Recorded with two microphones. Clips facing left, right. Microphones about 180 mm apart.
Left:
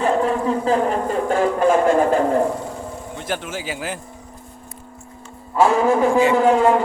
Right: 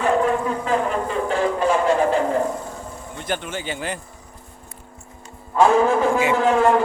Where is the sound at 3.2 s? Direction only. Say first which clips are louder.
Even; 5° left (ahead or behind).